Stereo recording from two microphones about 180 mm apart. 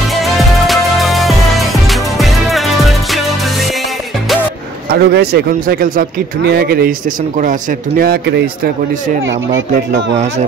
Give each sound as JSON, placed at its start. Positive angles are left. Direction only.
{"t": 0.4, "sound": "music", "side_deg": 0}
{"t": 4.9, "sound": "speech", "side_deg": -65}